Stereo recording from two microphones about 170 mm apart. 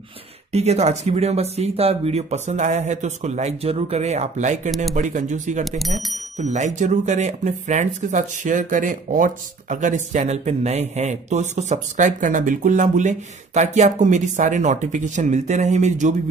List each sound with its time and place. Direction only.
0.5 s speech: 40° right (ahead or behind)
5.7 s speech: centre (ahead or behind)
6.3 s speech: 45° right (ahead or behind)